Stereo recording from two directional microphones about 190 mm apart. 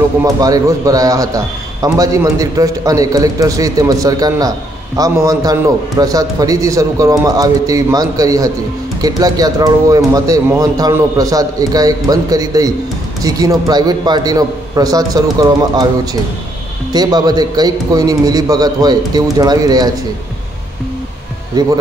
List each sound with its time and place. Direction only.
0.2 s a man's voice: 15° right (ahead or behind)
21.5 s speech: 20° right (ahead or behind)